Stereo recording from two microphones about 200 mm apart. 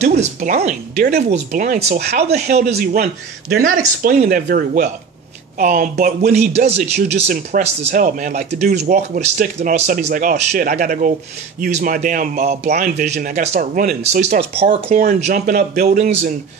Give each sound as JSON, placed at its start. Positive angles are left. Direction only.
{"t": 0.0, "sound": "a man's voice", "side_deg": -35}